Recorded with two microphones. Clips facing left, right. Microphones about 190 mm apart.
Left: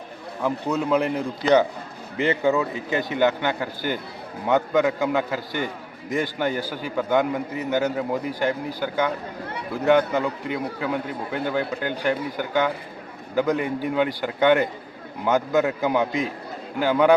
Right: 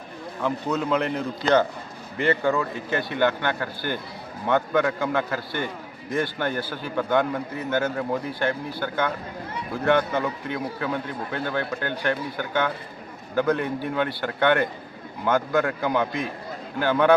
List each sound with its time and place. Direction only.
0.4 s a man's voice: 10° left (ahead or behind)